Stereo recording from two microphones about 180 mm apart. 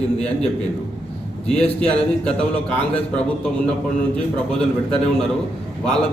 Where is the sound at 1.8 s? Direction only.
5° left (ahead or behind).